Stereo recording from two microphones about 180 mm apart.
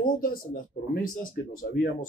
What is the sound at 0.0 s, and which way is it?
Speech, 50° left (ahead or behind).